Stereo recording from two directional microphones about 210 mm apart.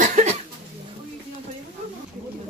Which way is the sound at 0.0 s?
35° right (ahead or behind).